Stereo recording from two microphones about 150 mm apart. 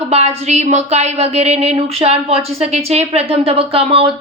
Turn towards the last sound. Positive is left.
turn(degrees=-40)  # may be behind; listen again after turning